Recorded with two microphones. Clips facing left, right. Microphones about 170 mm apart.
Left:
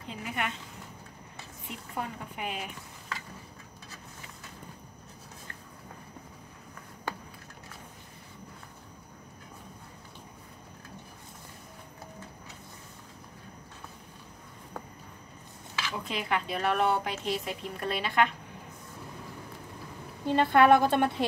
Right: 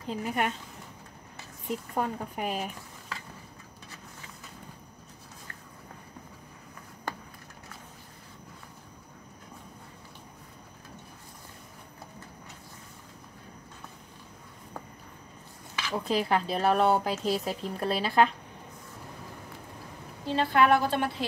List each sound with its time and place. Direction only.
0.0 s speech: 40° right (ahead or behind)
1.7 s speech: 40° right (ahead or behind)
15.9 s speech: 35° right (ahead or behind)
20.2 s a woman's voice: 55° left (ahead or behind)